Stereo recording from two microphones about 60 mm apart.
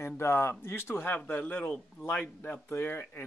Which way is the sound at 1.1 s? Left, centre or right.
Left.